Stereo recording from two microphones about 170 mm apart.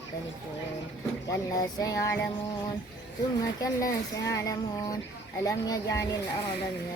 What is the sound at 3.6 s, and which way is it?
Speech, 20° left (ahead or behind).